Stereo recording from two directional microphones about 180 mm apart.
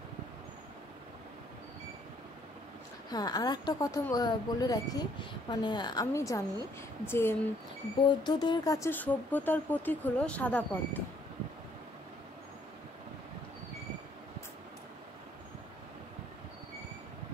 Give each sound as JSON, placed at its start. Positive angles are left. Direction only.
{"t": 3.1, "sound": "speech", "side_deg": 20}
{"t": 8.0, "sound": "speech", "side_deg": 25}